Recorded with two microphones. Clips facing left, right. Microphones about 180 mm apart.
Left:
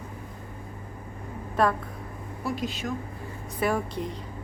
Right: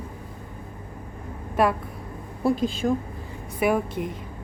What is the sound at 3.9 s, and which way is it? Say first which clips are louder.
Speech: right 3 dB; 50° right (ahead or behind).